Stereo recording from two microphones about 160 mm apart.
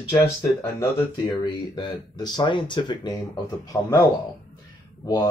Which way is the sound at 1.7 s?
30° left (ahead or behind).